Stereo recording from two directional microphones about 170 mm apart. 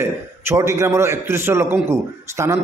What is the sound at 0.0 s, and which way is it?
A man's voice, 15° right (ahead or behind).